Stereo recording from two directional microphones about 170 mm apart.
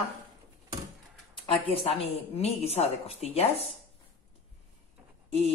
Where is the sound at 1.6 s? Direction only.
35° left (ahead or behind).